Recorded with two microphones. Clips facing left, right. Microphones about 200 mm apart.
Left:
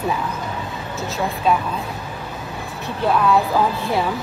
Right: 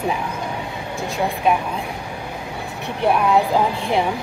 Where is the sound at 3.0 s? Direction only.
20° right (ahead or behind).